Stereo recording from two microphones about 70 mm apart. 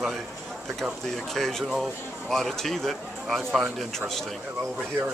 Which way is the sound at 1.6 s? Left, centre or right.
Centre.